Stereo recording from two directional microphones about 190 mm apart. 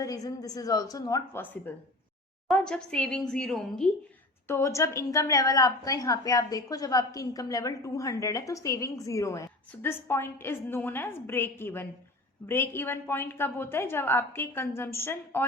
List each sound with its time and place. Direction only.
0.0 s a woman's voice: 20° left (ahead or behind); by 3.8 s centre (ahead or behind)
4.4 s a woman's voice: 15° left (ahead or behind)